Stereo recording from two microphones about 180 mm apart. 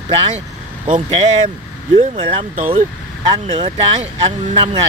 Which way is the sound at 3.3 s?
25° right (ahead or behind).